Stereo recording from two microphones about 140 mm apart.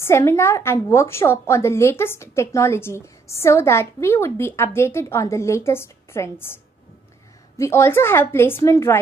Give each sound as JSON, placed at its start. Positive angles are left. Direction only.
{"t": 0.0, "sound": "a woman's voice", "side_deg": 20}